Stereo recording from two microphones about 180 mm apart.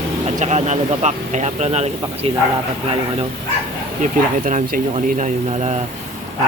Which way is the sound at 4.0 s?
45° right (ahead or behind).